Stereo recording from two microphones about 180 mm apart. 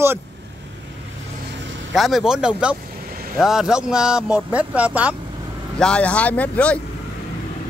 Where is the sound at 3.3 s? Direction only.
Centre (ahead or behind).